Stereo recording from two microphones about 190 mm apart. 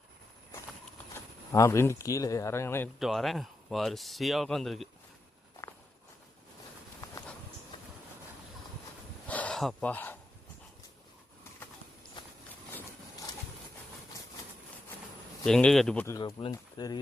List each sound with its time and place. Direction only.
1.5 s speech: 15° left (ahead or behind)
3.0 s speech: centre (ahead or behind)
9.2 s a sound: 10° left (ahead or behind)
15.4 s speech: 5° left (ahead or behind)
16.2 s speech: 25° left (ahead or behind)